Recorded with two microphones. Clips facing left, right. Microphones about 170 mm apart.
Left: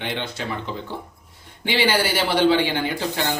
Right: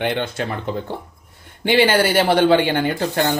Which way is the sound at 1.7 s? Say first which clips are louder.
Right 5 dB; 55° right (ahead or behind).